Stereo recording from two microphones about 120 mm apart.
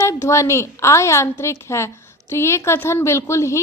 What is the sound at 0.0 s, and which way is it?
Speech, 25° left (ahead or behind).